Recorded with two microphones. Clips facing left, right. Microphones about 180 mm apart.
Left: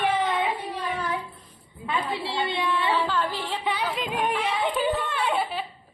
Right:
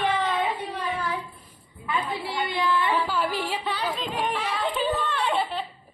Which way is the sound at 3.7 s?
10° left (ahead or behind).